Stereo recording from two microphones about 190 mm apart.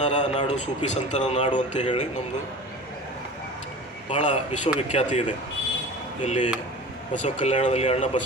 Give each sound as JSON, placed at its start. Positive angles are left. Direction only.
{"t": 0.0, "sound": "a man's voice", "side_deg": 40}
{"t": 4.1, "sound": "a man's voice", "side_deg": 40}
{"t": 6.2, "sound": "a man's voice", "side_deg": 40}